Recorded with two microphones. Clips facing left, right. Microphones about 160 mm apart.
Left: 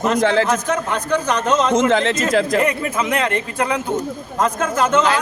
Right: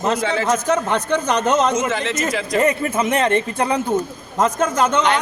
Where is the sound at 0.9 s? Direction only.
25° right (ahead or behind).